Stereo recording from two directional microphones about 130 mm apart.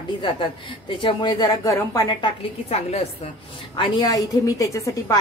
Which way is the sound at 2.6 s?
50° left (ahead or behind).